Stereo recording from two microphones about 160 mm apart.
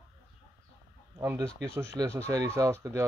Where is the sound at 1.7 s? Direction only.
15° right (ahead or behind).